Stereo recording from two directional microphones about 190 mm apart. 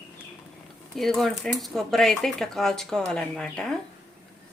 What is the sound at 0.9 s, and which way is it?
Speech, centre (ahead or behind).